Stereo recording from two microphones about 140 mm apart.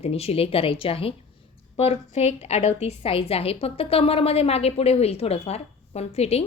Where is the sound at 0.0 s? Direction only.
45° left (ahead or behind).